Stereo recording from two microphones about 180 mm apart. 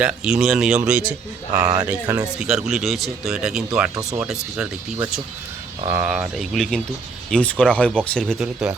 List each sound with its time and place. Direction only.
0.0 s speech: 5° right (ahead or behind)
1.5 s speech: 20° right (ahead or behind); by 3.6 s 5° right (ahead or behind)
3.9 s speech: 20° right (ahead or behind)
4.3 s speech: 5° right (ahead or behind)